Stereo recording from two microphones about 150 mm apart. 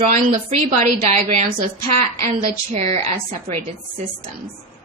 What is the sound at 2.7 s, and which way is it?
Speech, 45° right (ahead or behind).